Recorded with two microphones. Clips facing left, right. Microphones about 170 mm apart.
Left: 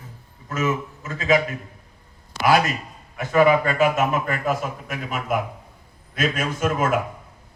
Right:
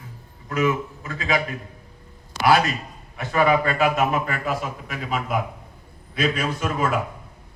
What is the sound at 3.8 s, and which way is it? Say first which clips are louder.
A man's voice: left 1 dB; 45° left (ahead or behind).